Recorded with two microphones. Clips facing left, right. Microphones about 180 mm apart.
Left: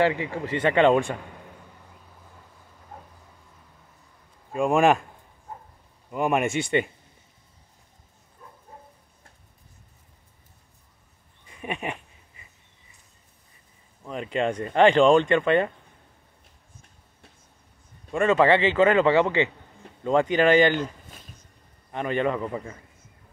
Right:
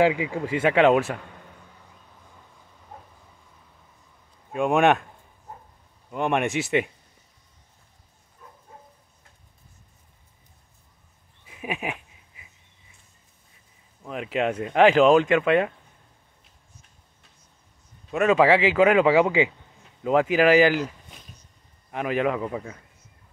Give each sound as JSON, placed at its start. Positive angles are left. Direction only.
{"t": 0.0, "sound": "a man's voice", "side_deg": -10}
{"t": 4.5, "sound": "speech", "side_deg": 0}
{"t": 6.0, "sound": "speech", "side_deg": 5}
{"t": 11.4, "sound": "a sound", "side_deg": -5}
{"t": 14.0, "sound": "speech", "side_deg": -5}
{"t": 18.1, "sound": "a man's voice", "side_deg": -5}